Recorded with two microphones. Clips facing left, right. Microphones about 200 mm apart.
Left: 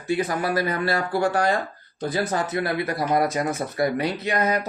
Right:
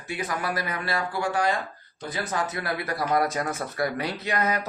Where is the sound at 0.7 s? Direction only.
40° left (ahead or behind).